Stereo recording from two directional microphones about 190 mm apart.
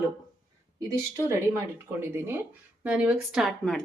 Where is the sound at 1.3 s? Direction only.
15° right (ahead or behind).